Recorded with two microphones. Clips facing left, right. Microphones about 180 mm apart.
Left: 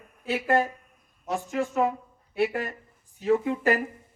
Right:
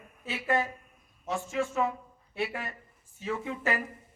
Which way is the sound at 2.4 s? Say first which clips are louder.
Left 8 dB; 45° left (ahead or behind).